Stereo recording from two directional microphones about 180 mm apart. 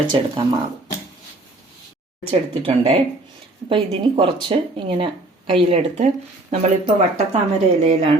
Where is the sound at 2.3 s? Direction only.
35° right (ahead or behind).